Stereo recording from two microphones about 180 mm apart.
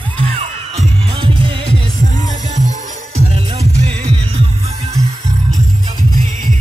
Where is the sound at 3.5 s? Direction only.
35° right (ahead or behind).